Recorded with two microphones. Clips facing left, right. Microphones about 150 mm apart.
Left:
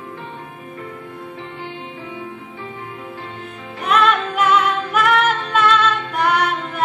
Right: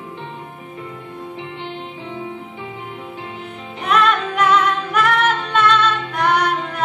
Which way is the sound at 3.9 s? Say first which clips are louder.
Even; 5° left (ahead or behind).